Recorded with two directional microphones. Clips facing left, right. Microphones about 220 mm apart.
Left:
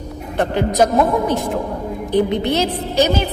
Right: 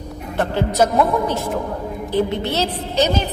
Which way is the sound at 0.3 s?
15° left (ahead or behind).